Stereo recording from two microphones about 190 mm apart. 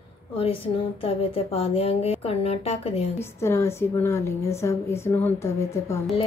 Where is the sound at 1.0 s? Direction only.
30° left (ahead or behind).